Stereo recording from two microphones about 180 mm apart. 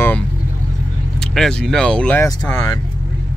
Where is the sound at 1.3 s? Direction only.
5° left (ahead or behind).